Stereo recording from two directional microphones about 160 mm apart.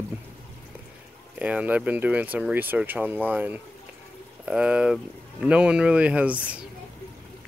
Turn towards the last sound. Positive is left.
turn(degrees=-10)  # may be behind; listen again after turning